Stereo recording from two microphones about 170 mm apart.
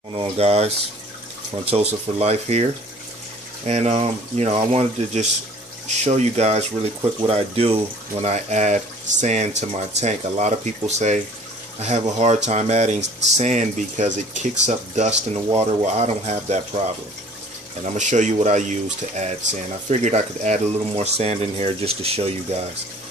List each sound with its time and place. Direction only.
0.1 s speech: 30° right (ahead or behind)
13.0 s speech: 90° right
13.4 s speech: 45° right (ahead or behind)
17.9 s speech: 45° right (ahead or behind)